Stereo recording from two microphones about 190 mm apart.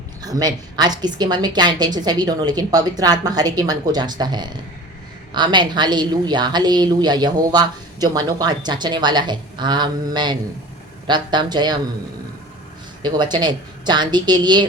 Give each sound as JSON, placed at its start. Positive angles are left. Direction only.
{"t": 0.3, "sound": "a woman's voice", "side_deg": -20}
{"t": 13.0, "sound": "a woman's voice", "side_deg": -25}